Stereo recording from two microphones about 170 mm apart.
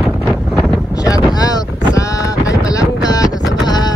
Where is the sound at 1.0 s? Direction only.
20° left (ahead or behind).